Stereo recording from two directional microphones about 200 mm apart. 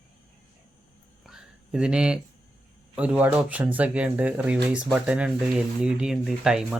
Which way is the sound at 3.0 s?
5° right (ahead or behind).